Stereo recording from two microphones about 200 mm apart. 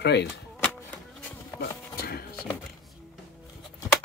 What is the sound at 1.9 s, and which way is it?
Music, 50° left (ahead or behind).